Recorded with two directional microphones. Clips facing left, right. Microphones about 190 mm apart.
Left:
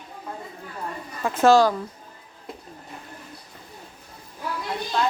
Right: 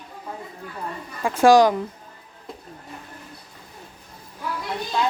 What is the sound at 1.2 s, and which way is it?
Speech, 10° right (ahead or behind).